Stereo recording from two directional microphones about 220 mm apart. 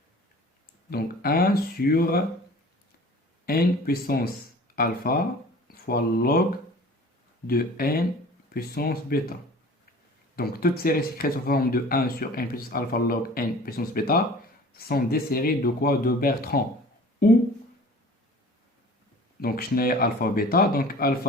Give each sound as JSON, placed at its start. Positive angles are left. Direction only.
{"t": 0.9, "sound": "speech", "side_deg": 45}
{"t": 3.4, "sound": "speech", "side_deg": 45}
{"t": 7.4, "sound": "speech", "side_deg": 45}
{"t": 10.3, "sound": "speech", "side_deg": 40}
{"t": 19.4, "sound": "speech", "side_deg": 45}